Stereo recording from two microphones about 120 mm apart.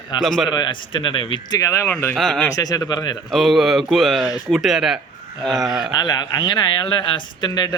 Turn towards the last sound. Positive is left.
turn(degrees=35)  # may be behind; listen again after turning